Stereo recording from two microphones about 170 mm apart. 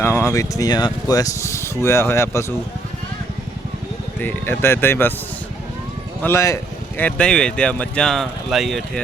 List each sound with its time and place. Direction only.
0.0 s speech: 15° left (ahead or behind)
4.2 s speech: 15° left (ahead or behind)
6.2 s speech: 15° left (ahead or behind); by 8.8 s centre (ahead or behind)